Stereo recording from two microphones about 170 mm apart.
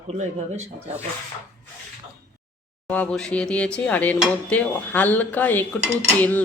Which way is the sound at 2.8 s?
5° left (ahead or behind).